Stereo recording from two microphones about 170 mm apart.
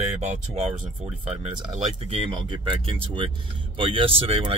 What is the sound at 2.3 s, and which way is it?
Speech, 25° right (ahead or behind).